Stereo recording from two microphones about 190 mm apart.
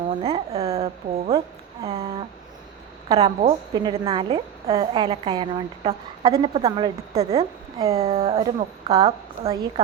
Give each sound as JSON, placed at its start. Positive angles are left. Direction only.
{"t": 0.1, "sound": "speech", "side_deg": -30}
{"t": 3.2, "sound": "a woman's voice", "side_deg": -30}
{"t": 8.0, "sound": "speech", "side_deg": -30}